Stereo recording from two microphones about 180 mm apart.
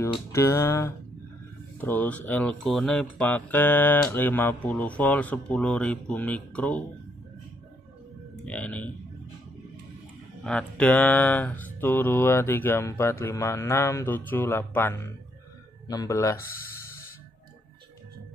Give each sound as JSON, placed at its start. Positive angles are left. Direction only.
{"t": 0.0, "sound": "speech", "side_deg": 15}
{"t": 8.5, "sound": "speech", "side_deg": 5}
{"t": 10.4, "sound": "speech", "side_deg": 5}